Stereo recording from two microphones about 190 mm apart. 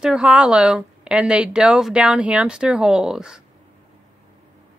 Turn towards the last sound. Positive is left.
turn(degrees=-5)  # may be behind; listen again after turning